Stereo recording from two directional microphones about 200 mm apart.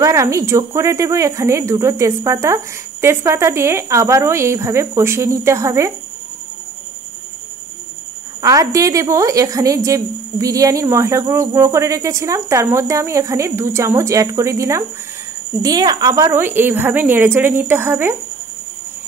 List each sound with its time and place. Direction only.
0.0 s a woman's voice: 15° right (ahead or behind)
8.4 s a woman's voice: 15° right (ahead or behind)